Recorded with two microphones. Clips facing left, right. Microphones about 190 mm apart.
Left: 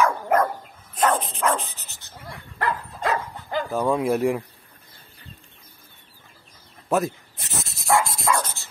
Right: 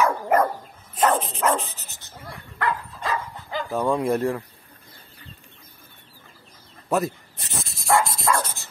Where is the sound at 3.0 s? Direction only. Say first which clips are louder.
Left 3 dB; 55° left (ahead or behind).